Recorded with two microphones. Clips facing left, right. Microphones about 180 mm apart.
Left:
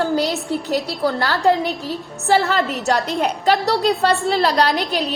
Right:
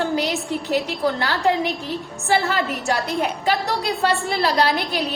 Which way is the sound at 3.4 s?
40° left (ahead or behind).